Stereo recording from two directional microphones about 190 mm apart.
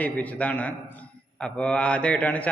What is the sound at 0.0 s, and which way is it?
A man's voice, 10° left (ahead or behind).